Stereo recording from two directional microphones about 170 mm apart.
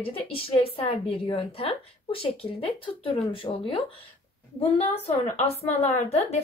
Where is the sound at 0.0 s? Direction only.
35° left (ahead or behind).